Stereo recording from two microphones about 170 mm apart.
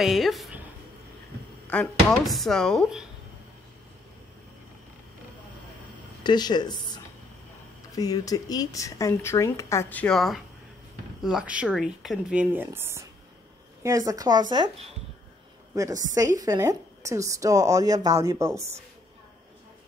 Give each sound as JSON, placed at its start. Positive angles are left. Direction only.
{"t": 0.0, "sound": "speech", "side_deg": 0}
{"t": 2.0, "sound": "speech", "side_deg": 0}
{"t": 6.2, "sound": "a woman's voice", "side_deg": 25}
{"t": 15.7, "sound": "a woman's voice", "side_deg": -20}